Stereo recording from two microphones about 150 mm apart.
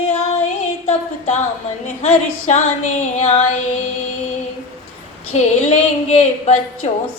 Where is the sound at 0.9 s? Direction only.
50° left (ahead or behind).